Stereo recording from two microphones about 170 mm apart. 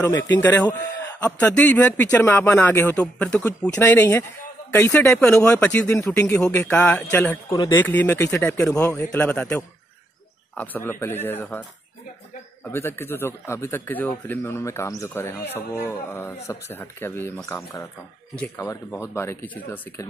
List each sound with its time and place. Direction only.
0.0 s speech: 15° left (ahead or behind)
12.6 s speech: 15° left (ahead or behind)